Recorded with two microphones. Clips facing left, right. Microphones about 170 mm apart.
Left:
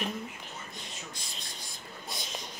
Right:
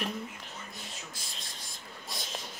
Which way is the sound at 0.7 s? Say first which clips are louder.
Left 1 dB; centre (ahead or behind).